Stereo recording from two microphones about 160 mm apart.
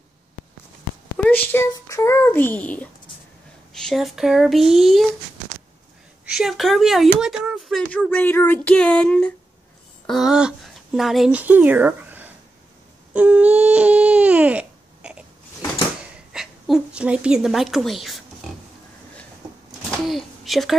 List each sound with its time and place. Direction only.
1.1 s a sound: 10° left (ahead or behind)
1.7 s a child's voice: 20° left (ahead or behind); by 5.0 s centre (ahead or behind)
6.2 s speech: 5° right (ahead or behind)
13.1 s baby cry: 10° right (ahead or behind)
16.3 s a woman's voice: 5° right (ahead or behind)
20.1 s a sound: centre (ahead or behind)